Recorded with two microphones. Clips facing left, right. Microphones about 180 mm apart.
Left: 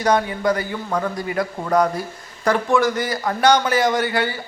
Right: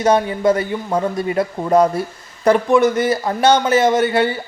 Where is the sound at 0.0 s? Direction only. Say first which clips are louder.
Right 4 dB; 25° right (ahead or behind).